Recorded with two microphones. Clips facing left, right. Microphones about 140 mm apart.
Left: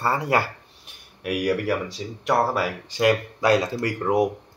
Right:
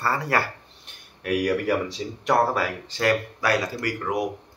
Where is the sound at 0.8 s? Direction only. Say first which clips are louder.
Left 1 dB; 5° left (ahead or behind).